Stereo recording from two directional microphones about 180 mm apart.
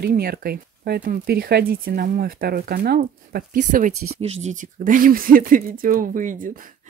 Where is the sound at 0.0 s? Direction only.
55° right (ahead or behind).